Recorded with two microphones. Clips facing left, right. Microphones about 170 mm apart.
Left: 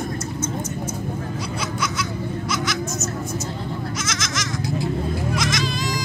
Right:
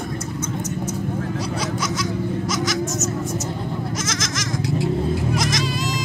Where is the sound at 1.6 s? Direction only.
40° right (ahead or behind).